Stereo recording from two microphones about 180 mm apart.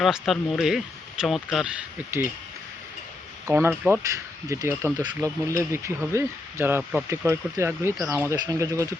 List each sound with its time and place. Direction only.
0.0 s speech: centre (ahead or behind)
2.0 s speech: 10° right (ahead or behind)
3.5 s speech: 10° right (ahead or behind)